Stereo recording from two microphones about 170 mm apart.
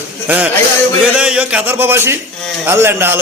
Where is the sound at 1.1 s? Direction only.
5° right (ahead or behind).